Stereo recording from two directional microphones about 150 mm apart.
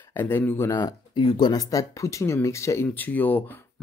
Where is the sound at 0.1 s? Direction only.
15° left (ahead or behind).